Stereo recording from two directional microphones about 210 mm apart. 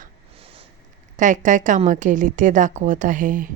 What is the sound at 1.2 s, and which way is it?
A woman's voice, 35° right (ahead or behind).